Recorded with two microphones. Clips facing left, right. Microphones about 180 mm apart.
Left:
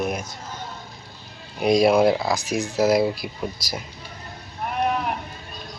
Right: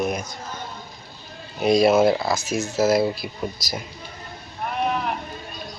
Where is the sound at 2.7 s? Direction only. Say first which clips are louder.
Even; centre (ahead or behind).